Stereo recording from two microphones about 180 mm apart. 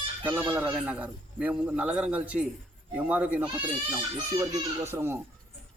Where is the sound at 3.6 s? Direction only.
20° right (ahead or behind).